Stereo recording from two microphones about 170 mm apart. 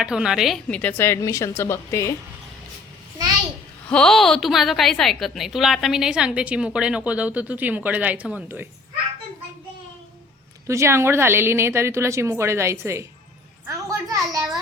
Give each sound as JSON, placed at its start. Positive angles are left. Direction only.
{"t": 0.0, "sound": "a woman's voice", "side_deg": -5}
{"t": 3.8, "sound": "a woman's voice", "side_deg": 5}
{"t": 10.7, "sound": "a woman's voice", "side_deg": -15}
{"t": 13.7, "sound": "a sound", "side_deg": -20}